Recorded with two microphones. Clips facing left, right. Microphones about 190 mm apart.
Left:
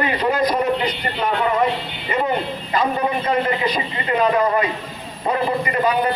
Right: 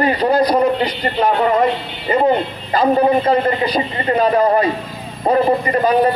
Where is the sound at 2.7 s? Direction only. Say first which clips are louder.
Right 7 dB; 35° right (ahead or behind).